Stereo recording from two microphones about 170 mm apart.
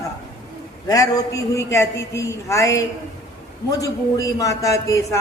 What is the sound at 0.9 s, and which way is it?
A woman's voice, 20° left (ahead or behind).